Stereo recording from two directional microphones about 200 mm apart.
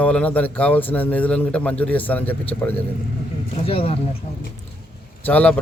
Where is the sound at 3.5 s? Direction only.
30° left (ahead or behind).